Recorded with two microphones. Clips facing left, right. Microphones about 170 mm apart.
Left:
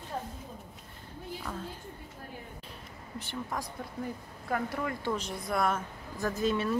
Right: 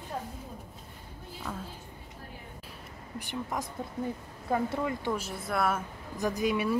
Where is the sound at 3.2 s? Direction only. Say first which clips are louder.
Right 2 dB; 15° right (ahead or behind).